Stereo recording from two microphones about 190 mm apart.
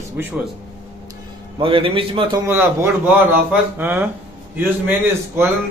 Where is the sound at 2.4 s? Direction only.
10° right (ahead or behind).